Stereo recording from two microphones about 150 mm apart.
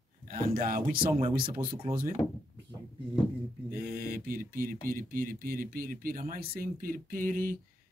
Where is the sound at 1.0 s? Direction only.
45° right (ahead or behind).